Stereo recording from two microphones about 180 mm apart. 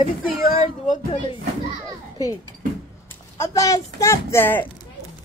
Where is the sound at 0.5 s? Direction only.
30° left (ahead or behind).